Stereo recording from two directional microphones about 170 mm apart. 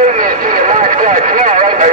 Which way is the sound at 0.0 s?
50° right (ahead or behind).